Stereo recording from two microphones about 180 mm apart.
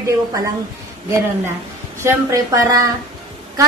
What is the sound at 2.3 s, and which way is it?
Speech, 20° right (ahead or behind).